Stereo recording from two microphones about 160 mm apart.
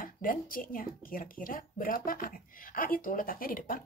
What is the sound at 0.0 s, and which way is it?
Speech, 60° left (ahead or behind).